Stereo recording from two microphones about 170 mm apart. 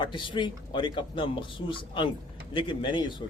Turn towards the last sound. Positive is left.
turn(degrees=25)  # may be behind; listen again after turning